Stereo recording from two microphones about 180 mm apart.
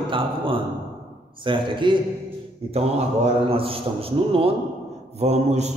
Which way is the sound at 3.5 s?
30° right (ahead or behind).